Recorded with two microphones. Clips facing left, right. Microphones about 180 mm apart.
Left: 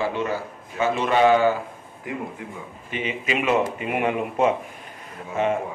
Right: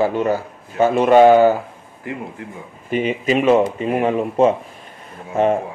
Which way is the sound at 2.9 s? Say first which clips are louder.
Right 9 dB; 40° right (ahead or behind).